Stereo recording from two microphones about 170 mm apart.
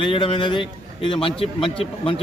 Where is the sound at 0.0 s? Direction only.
30° left (ahead or behind).